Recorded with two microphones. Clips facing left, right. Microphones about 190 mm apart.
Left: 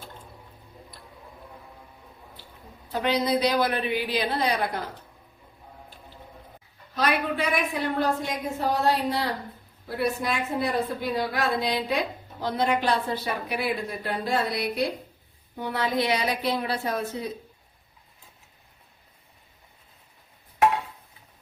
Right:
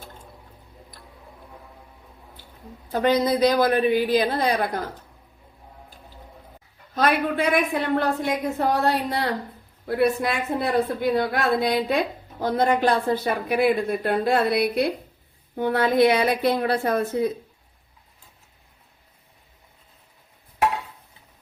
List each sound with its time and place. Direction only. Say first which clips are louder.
2.9 s speech: right 4 dB; 45° right (ahead or behind)
6.9 s a woman's voice: right 4 dB; 50° right (ahead or behind)